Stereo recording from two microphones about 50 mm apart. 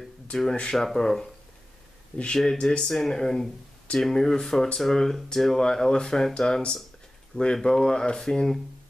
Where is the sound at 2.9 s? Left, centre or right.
Centre.